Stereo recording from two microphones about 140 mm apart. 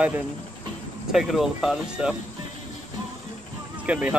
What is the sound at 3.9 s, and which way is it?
Speech, 10° right (ahead or behind).